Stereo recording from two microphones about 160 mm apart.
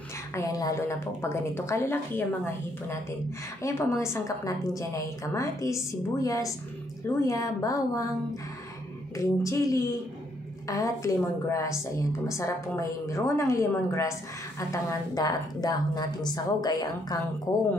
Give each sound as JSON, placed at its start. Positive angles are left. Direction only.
{"t": 0.3, "sound": "a woman's voice", "side_deg": 20}